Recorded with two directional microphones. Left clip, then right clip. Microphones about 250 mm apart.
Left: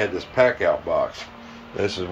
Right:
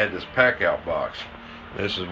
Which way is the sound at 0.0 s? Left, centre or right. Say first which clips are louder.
Left 1 dB; centre.